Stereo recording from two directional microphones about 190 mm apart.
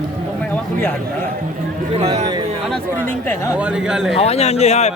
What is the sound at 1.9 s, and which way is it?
Speech, 35° right (ahead or behind).